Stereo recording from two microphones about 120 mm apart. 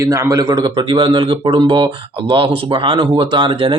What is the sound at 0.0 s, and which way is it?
Speech, 25° right (ahead or behind).